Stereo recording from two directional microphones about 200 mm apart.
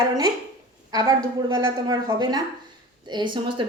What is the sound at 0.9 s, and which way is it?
A woman's voice, 20° right (ahead or behind).